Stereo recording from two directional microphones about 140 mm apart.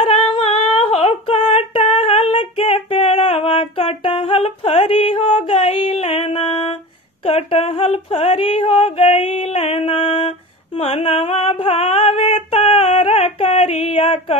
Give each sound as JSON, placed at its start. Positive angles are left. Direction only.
{"t": 0.3, "sound": "singing", "side_deg": 40}
{"t": 0.7, "sound": "female singing", "side_deg": 40}
{"t": 7.2, "sound": "a sound", "side_deg": 40}